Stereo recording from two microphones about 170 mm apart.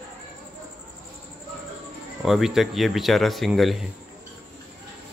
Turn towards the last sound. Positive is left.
turn(degrees=0)  # may be behind; listen again after turning